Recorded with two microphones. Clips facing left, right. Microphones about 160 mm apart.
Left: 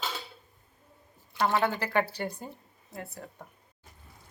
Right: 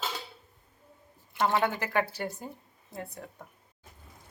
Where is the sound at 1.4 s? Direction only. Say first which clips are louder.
Even; 10° right (ahead or behind).